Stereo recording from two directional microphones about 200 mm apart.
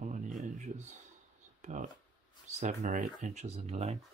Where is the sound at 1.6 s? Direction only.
35° right (ahead or behind).